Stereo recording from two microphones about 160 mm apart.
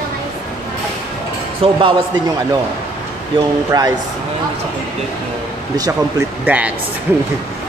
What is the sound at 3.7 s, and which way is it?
Speech, 25° right (ahead or behind).